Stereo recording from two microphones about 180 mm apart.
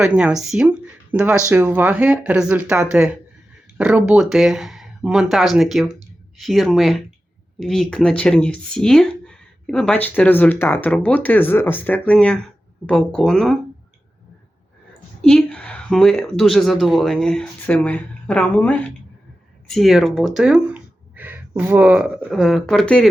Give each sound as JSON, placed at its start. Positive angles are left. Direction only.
{"t": 0.0, "sound": "a woman's voice", "side_deg": -5}
{"t": 15.2, "sound": "a woman's voice", "side_deg": 5}